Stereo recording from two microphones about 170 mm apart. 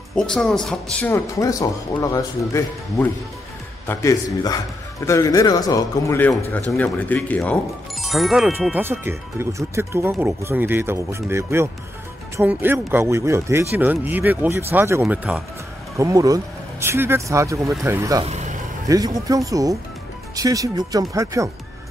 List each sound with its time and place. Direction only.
0.1 s speech: 5° left (ahead or behind)
1.0 s a man's voice: 20° left (ahead or behind); by 15.4 s 5° right (ahead or behind)
16.0 s speech: 20° right (ahead or behind)
18.2 s speech: 40° right (ahead or behind)
18.9 s speech: 20° right (ahead or behind)